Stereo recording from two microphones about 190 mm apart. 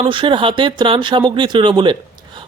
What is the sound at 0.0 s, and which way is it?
Speech, 25° right (ahead or behind).